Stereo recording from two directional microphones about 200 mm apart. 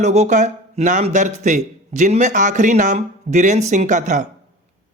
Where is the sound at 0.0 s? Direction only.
35° right (ahead or behind).